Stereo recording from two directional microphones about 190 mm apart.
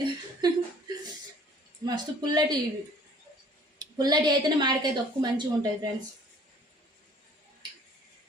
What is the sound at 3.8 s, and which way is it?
A woman's voice, 20° right (ahead or behind).